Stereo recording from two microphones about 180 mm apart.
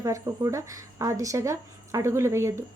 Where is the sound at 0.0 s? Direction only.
15° right (ahead or behind).